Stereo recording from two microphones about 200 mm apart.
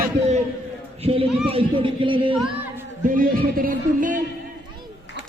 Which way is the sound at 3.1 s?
45° right (ahead or behind).